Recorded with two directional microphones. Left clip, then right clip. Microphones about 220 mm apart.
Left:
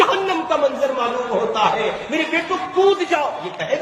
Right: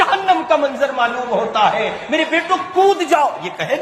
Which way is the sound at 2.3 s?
45° right (ahead or behind).